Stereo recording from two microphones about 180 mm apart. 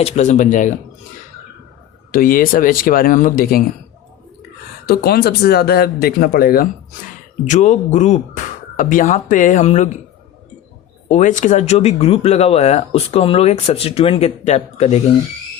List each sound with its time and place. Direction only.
0.0 s speech: 40° left (ahead or behind)
2.1 s speech: 50° left (ahead or behind)
4.9 s speech: 60° left (ahead or behind)
7.4 s speech: 45° left (ahead or behind)
11.1 s speech: 45° left (ahead or behind)